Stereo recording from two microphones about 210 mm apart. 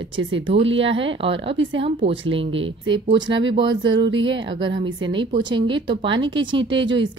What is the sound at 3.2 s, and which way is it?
Speech, 60° right (ahead or behind).